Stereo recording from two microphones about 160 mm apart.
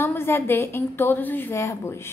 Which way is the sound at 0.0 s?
15° left (ahead or behind).